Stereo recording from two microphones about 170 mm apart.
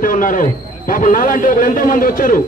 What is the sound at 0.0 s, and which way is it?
A man's voice, 55° left (ahead or behind).